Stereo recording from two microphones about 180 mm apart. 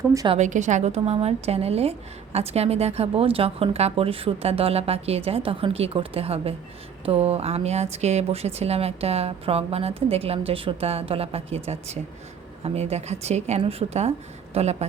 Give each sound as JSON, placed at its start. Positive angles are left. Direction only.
{"t": 0.3, "sound": "a woman's voice", "side_deg": -40}